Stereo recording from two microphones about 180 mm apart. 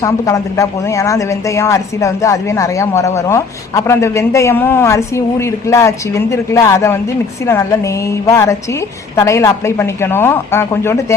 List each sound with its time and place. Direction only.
0.0 s a woman's voice: 20° left (ahead or behind)